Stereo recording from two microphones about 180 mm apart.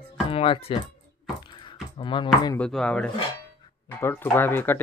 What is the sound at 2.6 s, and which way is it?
Speech, 5° left (ahead or behind).